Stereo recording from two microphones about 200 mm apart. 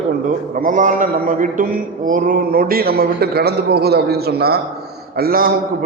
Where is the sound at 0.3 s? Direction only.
40° right (ahead or behind).